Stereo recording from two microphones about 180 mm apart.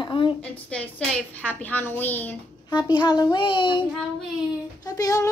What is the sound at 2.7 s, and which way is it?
Speech, 25° left (ahead or behind).